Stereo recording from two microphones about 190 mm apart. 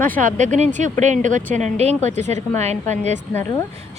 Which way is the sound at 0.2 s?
40° right (ahead or behind).